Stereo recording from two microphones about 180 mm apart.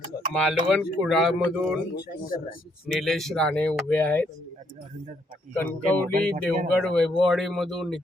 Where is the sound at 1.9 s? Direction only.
60° left (ahead or behind).